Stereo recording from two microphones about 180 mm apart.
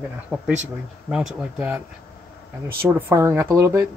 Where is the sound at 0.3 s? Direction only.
10° right (ahead or behind).